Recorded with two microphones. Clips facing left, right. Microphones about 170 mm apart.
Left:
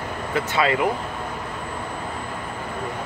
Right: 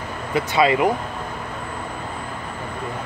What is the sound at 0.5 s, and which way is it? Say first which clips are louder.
Speech: right 4 dB; 15° right (ahead or behind).